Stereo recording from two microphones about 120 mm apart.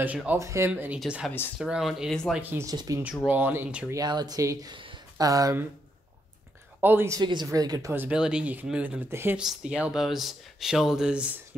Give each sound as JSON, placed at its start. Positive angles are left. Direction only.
{"t": 0.0, "sound": "speech", "side_deg": -15}
{"t": 0.4, "sound": "speech", "side_deg": -25}
{"t": 0.9, "sound": "speech", "side_deg": -5}
{"t": 2.6, "sound": "speech", "side_deg": -30}
{"t": 3.3, "sound": "speech", "side_deg": -15}
{"t": 3.9, "sound": "speech", "side_deg": -35}
{"t": 6.8, "sound": "speech", "side_deg": -20}
{"t": 7.2, "sound": "speech", "side_deg": -40}
{"t": 7.9, "sound": "speech", "side_deg": -15}
{"t": 9.4, "sound": "speech", "side_deg": -5}